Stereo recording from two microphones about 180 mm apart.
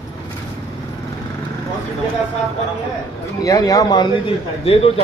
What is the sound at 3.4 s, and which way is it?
A man's voice, 20° left (ahead or behind).